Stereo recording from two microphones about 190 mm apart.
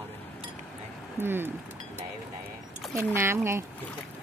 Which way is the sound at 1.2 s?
10° right (ahead or behind).